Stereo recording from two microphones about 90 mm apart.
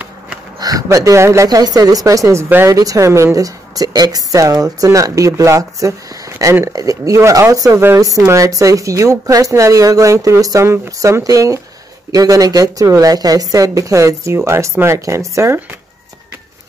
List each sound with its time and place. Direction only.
0.6 s a sound: 45° right (ahead or behind)
0.8 s speech: 35° right (ahead or behind)
1.5 s speech: 45° right (ahead or behind); by 15.6 s 30° right (ahead or behind)